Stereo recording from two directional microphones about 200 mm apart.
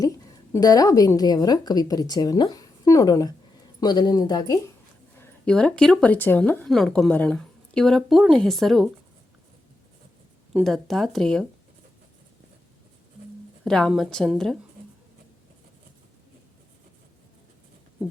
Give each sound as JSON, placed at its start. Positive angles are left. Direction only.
{"t": 0.0, "sound": "a woman's voice", "side_deg": 15}
{"t": 5.1, "sound": "speech", "side_deg": 10}
{"t": 10.5, "sound": "speech", "side_deg": 0}
{"t": 13.7, "sound": "speech", "side_deg": 0}